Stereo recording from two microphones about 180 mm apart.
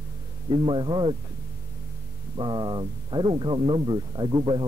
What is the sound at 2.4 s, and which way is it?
Speech, 25° right (ahead or behind).